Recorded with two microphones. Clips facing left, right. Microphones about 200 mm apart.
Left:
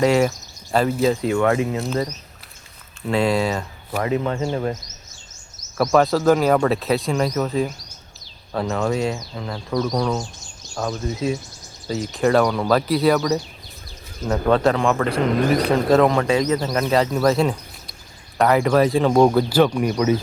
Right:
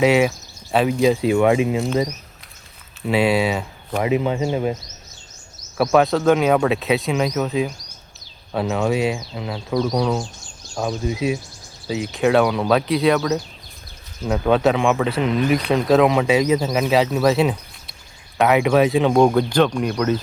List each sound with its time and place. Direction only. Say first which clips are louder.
0.0 s speech: right 1 dB; 5° right (ahead or behind)
1.0 s speech: right 5 dB; 15° right (ahead or behind)
3.1 s speech: right 1 dB; 5° right (ahead or behind)
5.7 s speech: right 1 dB; centre (ahead or behind)